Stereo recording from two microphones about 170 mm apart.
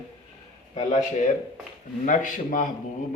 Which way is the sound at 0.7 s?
45° left (ahead or behind).